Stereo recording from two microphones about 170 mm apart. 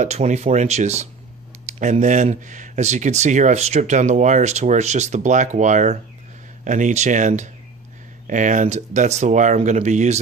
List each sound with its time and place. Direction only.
0.0 s speech: 45° right (ahead or behind)